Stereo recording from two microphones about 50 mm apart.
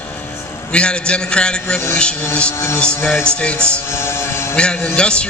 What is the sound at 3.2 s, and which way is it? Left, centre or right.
Speech, left.